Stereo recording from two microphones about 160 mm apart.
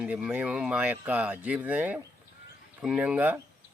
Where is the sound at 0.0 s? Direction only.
5° right (ahead or behind).